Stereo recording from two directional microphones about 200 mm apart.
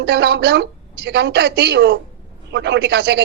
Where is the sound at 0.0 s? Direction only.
55° right (ahead or behind).